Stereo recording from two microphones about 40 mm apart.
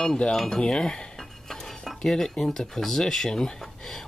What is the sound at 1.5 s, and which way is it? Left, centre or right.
Dishes, centre.